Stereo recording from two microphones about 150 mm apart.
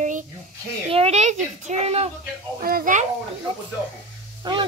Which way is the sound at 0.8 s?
40° right (ahead or behind).